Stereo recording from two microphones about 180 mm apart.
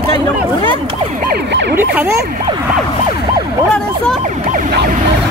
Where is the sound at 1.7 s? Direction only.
10° right (ahead or behind).